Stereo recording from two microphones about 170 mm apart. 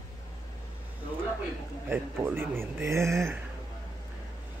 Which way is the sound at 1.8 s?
10° right (ahead or behind).